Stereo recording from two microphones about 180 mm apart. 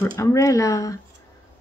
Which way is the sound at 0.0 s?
15° left (ahead or behind).